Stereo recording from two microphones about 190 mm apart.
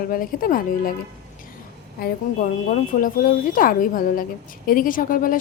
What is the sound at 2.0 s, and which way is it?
A woman's voice, 50° left (ahead or behind).